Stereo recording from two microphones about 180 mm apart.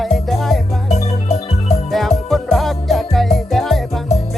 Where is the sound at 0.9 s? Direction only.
40° left (ahead or behind).